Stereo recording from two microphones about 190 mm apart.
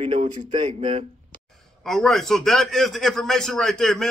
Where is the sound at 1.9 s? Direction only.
Centre (ahead or behind).